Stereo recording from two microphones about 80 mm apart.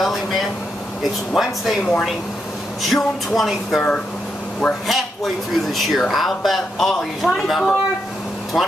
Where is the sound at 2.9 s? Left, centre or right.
Centre.